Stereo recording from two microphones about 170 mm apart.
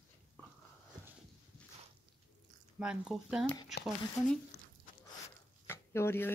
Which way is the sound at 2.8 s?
5° right (ahead or behind).